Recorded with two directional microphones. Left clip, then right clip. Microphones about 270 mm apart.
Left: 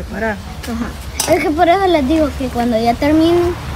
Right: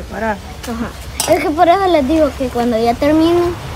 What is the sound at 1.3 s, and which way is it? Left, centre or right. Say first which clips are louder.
Speech: right 1 dB; centre.